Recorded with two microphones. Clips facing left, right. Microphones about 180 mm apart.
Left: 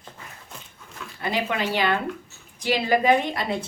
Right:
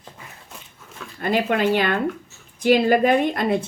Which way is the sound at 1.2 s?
50° right (ahead or behind).